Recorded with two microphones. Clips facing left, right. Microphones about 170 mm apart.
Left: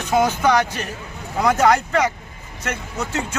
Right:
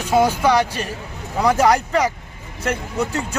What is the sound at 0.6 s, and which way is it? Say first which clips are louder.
Speech: right 2 dB; 35° right (ahead or behind).